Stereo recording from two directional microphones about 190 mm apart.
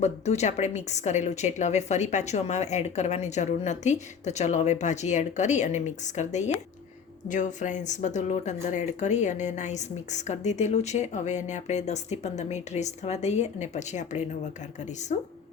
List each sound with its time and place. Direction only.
0.0 s speech: 35° left (ahead or behind)